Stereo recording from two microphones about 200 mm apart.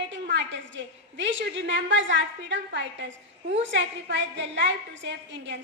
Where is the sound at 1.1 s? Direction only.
65° right (ahead or behind).